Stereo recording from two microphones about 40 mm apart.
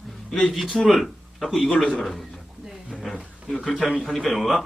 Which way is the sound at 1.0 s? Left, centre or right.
Centre.